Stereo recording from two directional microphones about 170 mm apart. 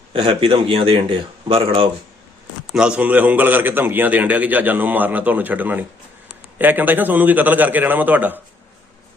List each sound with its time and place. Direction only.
0.1 s speech: 30° right (ahead or behind)
2.7 s a man's voice: 5° right (ahead or behind)